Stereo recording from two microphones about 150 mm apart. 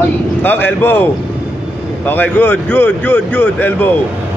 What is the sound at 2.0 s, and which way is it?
Speech, 10° left (ahead or behind).